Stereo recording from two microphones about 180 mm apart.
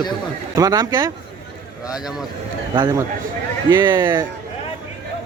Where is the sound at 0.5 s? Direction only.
20° right (ahead or behind).